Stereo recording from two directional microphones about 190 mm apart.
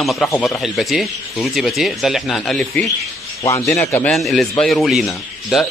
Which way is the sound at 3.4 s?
15° left (ahead or behind).